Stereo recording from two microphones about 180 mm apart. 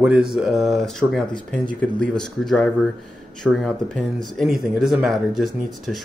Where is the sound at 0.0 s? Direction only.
5° right (ahead or behind).